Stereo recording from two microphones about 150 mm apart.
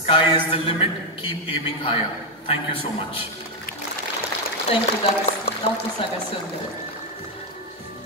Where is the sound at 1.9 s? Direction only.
40° left (ahead or behind).